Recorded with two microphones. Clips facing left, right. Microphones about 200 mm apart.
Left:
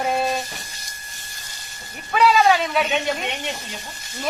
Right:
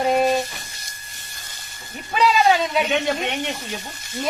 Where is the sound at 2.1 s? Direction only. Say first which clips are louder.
Left 1 dB; 20° right (ahead or behind).